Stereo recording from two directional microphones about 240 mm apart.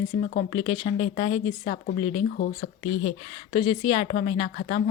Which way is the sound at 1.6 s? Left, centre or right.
Left.